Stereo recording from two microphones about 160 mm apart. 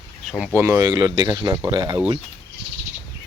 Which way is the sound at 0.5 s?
20° right (ahead or behind).